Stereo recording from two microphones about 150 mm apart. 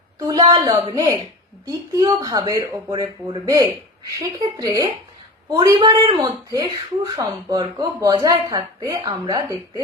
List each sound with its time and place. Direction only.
0.3 s speech: 25° right (ahead or behind)